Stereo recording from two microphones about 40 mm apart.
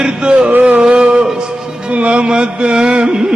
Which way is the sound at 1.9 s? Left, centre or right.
Right.